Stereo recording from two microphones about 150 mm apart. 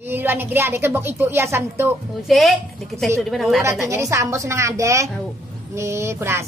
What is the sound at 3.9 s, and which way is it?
A woman's voice, 20° right (ahead or behind).